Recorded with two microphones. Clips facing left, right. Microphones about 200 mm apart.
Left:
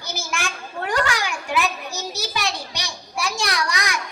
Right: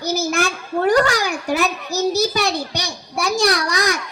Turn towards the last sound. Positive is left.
turn(degrees=-35)  # may be behind; listen again after turning